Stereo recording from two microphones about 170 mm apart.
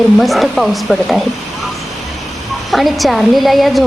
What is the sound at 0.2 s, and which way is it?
Speech, centre (ahead or behind).